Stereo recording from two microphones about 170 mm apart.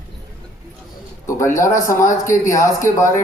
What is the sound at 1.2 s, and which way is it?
A man's voice, 20° left (ahead or behind).